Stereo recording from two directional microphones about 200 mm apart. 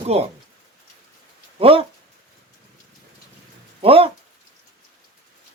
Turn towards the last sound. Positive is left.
turn(degrees=-25)  # may be behind; listen again after turning